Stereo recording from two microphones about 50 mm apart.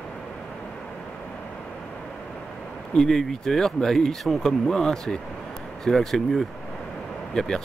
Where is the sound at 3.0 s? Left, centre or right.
Centre.